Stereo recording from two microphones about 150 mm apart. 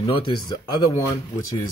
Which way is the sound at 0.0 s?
30° left (ahead or behind).